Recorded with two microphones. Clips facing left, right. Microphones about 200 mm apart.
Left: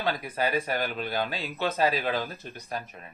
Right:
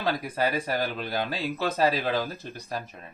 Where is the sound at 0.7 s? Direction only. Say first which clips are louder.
Right 1 dB; 35° right (ahead or behind).